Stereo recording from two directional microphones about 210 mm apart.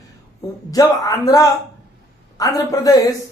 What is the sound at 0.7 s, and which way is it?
Speech, 15° left (ahead or behind).